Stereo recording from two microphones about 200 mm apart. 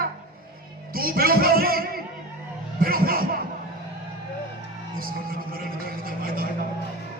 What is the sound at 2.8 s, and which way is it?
Chuckle, 45° right (ahead or behind).